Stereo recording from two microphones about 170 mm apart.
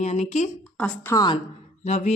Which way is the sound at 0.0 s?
45° left (ahead or behind).